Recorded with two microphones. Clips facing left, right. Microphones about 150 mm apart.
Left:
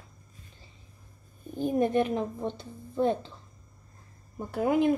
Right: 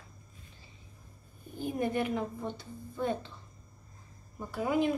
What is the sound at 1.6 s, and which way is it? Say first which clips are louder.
A woman's voice: left 6 dB; 30° left (ahead or behind).